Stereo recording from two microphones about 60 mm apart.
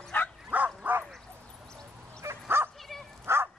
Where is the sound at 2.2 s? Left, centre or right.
Right.